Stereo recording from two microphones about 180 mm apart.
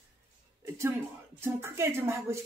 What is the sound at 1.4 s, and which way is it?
Speech, 15° right (ahead or behind).